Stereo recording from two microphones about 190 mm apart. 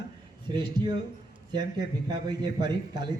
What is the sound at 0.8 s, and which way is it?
Speech, 20° right (ahead or behind).